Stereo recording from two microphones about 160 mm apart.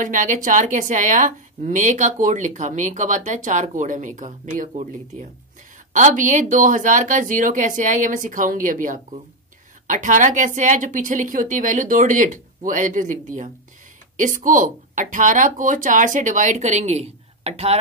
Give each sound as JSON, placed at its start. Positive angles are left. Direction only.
{"t": 0.0, "sound": "a woman's voice", "side_deg": -50}